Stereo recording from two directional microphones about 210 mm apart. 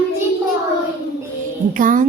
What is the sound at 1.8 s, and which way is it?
Music, 40° right (ahead or behind).